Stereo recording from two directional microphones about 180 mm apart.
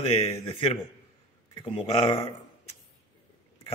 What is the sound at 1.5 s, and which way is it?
Speech, 30° left (ahead or behind).